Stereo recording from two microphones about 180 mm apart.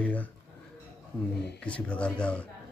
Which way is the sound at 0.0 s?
10° left (ahead or behind).